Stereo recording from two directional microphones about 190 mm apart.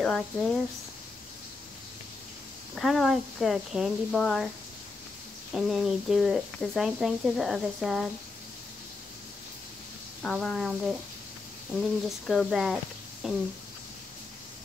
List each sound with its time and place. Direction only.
0.0 s speech: 5° left (ahead or behind)
2.7 s speech: centre (ahead or behind)
5.5 s speech: 5° right (ahead or behind)
10.2 s speech: 5° left (ahead or behind)
12.3 s speech: centre (ahead or behind)